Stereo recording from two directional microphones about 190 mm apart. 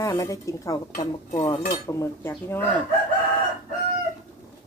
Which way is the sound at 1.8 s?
15° left (ahead or behind).